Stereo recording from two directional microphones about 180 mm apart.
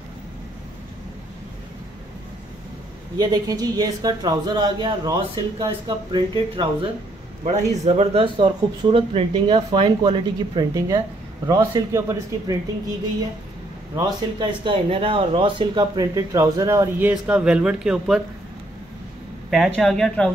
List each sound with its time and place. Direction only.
3.2 s speech: 20° right (ahead or behind)
7.4 s speech: 40° right (ahead or behind); by 12.5 s 20° right (ahead or behind)
13.9 s speech: 25° right (ahead or behind)
17.1 s speech: 5° right (ahead or behind)
19.5 s speech: centre (ahead or behind)